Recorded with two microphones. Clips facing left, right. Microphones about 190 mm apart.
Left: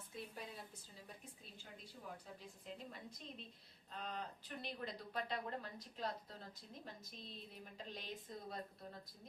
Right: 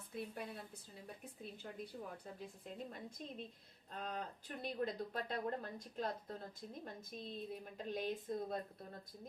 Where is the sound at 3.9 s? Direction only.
50° right (ahead or behind).